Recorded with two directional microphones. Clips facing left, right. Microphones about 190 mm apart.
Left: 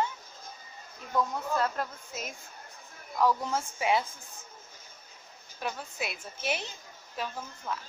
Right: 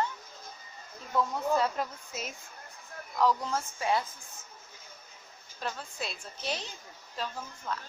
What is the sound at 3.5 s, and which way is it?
Speech, 15° left (ahead or behind).